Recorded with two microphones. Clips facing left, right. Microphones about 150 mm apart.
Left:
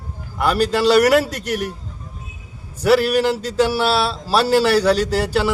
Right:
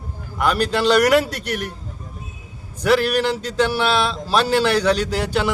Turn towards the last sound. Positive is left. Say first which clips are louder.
# left 3 dB
turn(degrees=5)  # may be behind; listen again after turning